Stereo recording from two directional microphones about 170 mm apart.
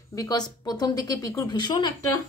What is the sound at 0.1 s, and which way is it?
A woman's voice, 20° left (ahead or behind).